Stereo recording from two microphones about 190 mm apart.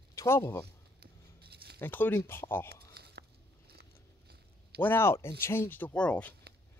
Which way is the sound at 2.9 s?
60° right (ahead or behind).